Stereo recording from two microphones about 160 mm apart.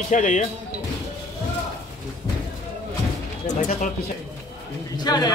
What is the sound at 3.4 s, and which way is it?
Speech, 50° left (ahead or behind).